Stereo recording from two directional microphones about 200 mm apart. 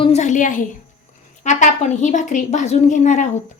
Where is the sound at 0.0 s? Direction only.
35° left (ahead or behind).